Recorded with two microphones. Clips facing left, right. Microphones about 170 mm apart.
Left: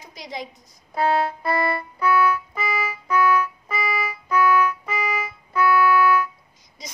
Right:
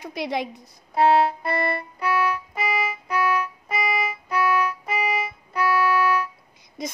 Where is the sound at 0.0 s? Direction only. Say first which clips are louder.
Right 7 dB; 65° right (ahead or behind).